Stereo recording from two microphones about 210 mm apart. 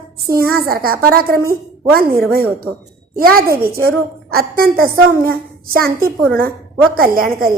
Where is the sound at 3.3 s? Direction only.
45° right (ahead or behind).